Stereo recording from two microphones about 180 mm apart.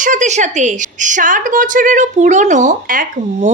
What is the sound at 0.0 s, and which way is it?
A woman's voice, 45° right (ahead or behind).